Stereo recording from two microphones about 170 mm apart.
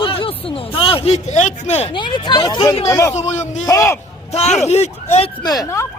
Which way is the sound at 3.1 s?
40° left (ahead or behind).